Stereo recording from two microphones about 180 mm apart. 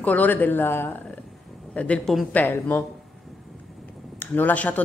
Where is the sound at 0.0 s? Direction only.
10° left (ahead or behind).